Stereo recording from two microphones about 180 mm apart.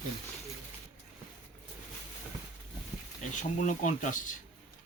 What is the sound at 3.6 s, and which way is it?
Speech, 45° left (ahead or behind).